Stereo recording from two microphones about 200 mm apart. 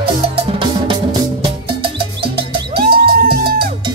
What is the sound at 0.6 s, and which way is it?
Music, 25° right (ahead or behind).